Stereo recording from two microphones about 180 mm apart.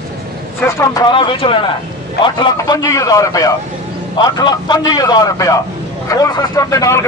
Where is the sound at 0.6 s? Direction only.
20° left (ahead or behind).